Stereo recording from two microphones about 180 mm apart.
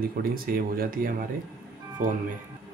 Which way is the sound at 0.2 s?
55° right (ahead or behind).